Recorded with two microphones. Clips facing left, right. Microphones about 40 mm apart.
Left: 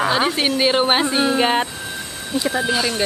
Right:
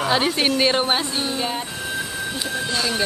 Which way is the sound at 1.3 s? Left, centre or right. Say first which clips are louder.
Left 8 dB; left.